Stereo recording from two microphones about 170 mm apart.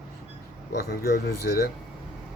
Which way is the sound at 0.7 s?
65° left (ahead or behind).